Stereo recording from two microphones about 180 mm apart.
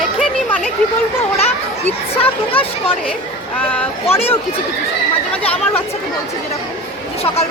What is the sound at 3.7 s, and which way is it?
Speech, 10° left (ahead or behind).